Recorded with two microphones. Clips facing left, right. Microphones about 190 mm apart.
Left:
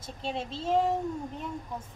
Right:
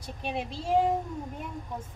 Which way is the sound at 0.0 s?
15° right (ahead or behind).